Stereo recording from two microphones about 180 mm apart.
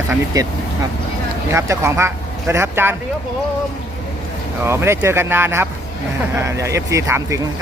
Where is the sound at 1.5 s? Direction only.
15° right (ahead or behind).